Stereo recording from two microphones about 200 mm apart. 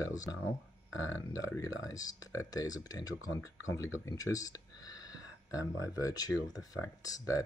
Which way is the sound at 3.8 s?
15° left (ahead or behind).